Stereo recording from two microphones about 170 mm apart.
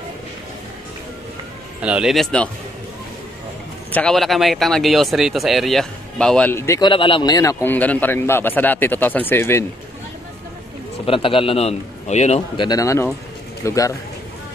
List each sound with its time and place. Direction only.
1.8 s speech: 5° right (ahead or behind)
3.9 s speech: 5° left (ahead or behind)
6.9 s a man's voice: 30° left (ahead or behind); by 9.7 s 15° left (ahead or behind)
11.1 s a man's voice: 30° left (ahead or behind)
12.5 s speech: 20° left (ahead or behind)